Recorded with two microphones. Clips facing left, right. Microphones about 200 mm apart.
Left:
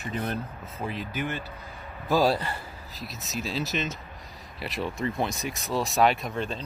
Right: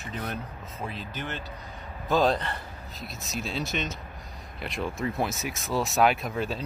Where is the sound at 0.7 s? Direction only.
15° left (ahead or behind).